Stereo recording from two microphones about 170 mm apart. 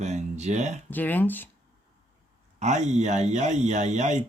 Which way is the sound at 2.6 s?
45° right (ahead or behind).